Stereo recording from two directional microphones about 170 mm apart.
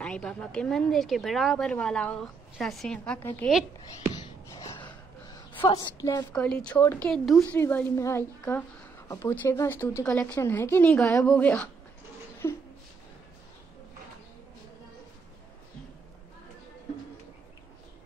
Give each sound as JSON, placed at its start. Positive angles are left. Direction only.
{"t": 0.0, "sound": "a woman's voice", "side_deg": 5}
{"t": 4.1, "sound": "gasp", "side_deg": 20}
{"t": 5.7, "sound": "a woman's voice", "side_deg": 25}
{"t": 6.3, "sound": "speech", "side_deg": 5}
{"t": 7.1, "sound": "a woman's voice", "side_deg": 0}
{"t": 7.5, "sound": "speech", "side_deg": 10}